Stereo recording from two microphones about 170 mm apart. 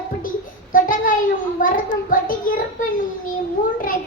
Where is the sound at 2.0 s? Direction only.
55° left (ahead or behind).